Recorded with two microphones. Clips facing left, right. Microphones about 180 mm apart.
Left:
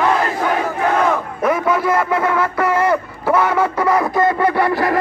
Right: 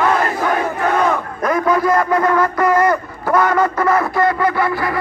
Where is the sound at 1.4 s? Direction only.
5° left (ahead or behind).